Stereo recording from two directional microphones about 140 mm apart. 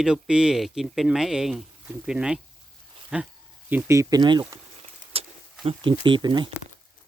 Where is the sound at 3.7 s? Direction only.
20° right (ahead or behind).